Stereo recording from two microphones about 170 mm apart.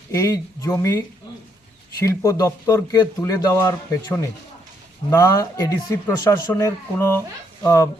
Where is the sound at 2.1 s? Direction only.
20° left (ahead or behind).